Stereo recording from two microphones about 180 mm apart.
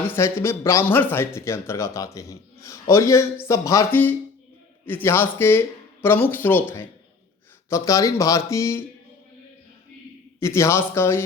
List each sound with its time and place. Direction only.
0.1 s speech: 15° left (ahead or behind)
10.4 s speech: 15° left (ahead or behind)